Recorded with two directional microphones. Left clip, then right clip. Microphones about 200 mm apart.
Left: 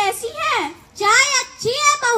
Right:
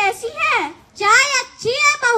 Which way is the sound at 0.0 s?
20° left (ahead or behind).